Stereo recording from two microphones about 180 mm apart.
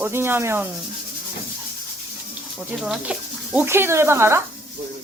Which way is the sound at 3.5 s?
15° right (ahead or behind).